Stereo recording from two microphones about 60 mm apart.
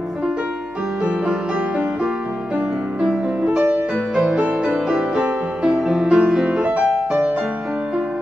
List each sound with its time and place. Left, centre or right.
3.6 s music: right